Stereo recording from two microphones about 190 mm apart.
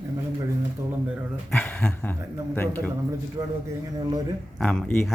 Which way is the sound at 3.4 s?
20° right (ahead or behind).